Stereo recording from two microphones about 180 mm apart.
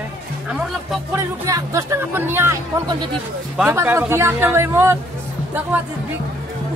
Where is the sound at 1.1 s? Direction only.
15° right (ahead or behind).